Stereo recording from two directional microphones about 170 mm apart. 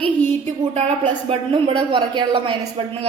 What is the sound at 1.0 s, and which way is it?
A woman's voice, 35° right (ahead or behind).